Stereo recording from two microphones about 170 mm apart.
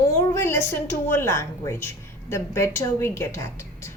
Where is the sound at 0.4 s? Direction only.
15° left (ahead or behind).